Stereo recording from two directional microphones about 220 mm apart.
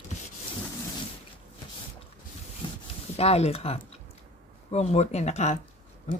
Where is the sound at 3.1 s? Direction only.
30° left (ahead or behind).